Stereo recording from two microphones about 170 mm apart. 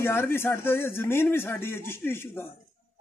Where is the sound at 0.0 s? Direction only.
15° left (ahead or behind).